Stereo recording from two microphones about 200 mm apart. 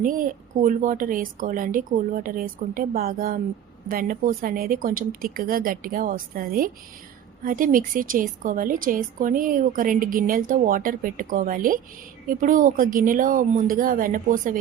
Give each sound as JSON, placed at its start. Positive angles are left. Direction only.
{"t": 0.0, "sound": "a woman's voice", "side_deg": -45}